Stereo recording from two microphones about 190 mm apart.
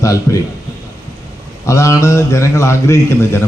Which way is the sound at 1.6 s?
15° left (ahead or behind).